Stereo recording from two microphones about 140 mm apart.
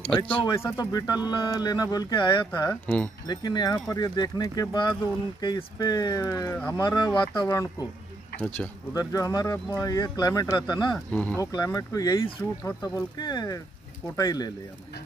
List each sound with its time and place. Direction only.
0.1 s speech: 5° left (ahead or behind)
0.5 s speech: 20° left (ahead or behind)
2.7 s speech: 15° left (ahead or behind)
3.3 s speech: 30° left (ahead or behind)
6.5 s speech: 10° left (ahead or behind)
6.8 s speech: 30° left (ahead or behind)
8.9 s speech: 25° left (ahead or behind)
11.1 s speech: 10° left (ahead or behind)
11.3 s speech: 25° left (ahead or behind)